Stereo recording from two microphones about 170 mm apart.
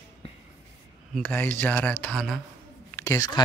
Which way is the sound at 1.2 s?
10° left (ahead or behind).